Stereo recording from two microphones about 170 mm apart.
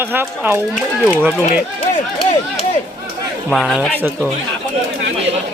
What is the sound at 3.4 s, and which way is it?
Speech, centre (ahead or behind).